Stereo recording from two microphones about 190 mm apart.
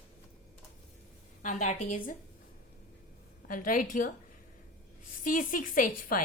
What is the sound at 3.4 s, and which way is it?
Speech, 45° left (ahead or behind).